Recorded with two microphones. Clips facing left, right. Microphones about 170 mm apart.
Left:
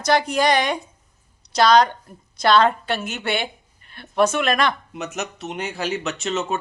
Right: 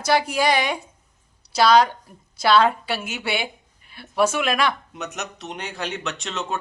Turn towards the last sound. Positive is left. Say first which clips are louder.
# left 4 dB
turn(degrees=5)  # may be behind; listen again after turning